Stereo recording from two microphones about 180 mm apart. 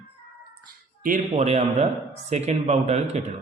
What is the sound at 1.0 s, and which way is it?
Speech, 40° right (ahead or behind).